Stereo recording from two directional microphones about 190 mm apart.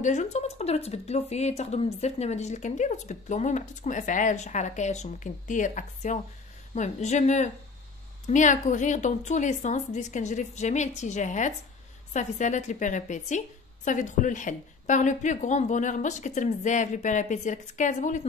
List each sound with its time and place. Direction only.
0.0 s speech: 40° left (ahead or behind)